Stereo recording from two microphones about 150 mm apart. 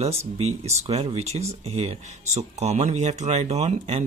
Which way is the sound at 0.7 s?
45° right (ahead or behind).